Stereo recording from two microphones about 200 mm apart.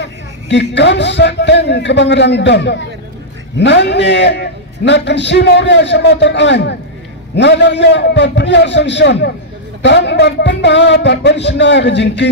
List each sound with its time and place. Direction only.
0.0 s a man's voice: 60° left (ahead or behind)